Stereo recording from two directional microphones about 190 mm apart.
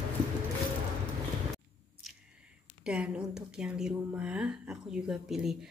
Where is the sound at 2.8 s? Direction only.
5° right (ahead or behind).